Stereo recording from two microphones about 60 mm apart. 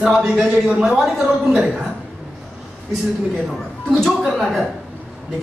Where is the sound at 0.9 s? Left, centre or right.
Centre.